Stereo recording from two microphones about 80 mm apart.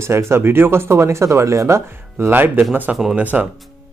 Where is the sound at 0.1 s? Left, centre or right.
Right.